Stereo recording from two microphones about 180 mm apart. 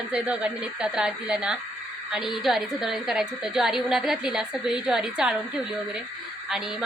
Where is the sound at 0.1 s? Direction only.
5° right (ahead or behind).